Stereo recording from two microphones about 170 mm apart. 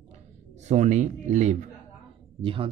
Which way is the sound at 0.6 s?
45° right (ahead or behind).